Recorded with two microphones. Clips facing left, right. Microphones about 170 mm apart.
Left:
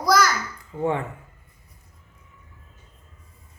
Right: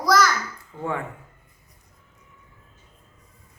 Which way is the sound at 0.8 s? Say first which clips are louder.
Left 4 dB; 20° left (ahead or behind).